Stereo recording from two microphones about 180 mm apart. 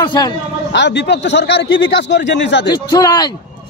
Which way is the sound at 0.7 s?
75° left (ahead or behind).